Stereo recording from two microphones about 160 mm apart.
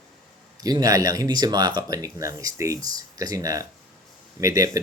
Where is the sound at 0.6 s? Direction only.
25° right (ahead or behind).